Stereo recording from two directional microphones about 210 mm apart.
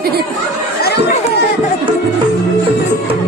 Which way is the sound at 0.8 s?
50° left (ahead or behind).